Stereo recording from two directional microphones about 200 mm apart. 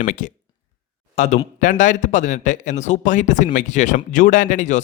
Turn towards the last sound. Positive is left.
turn(degrees=40)  # may be behind; listen again after turning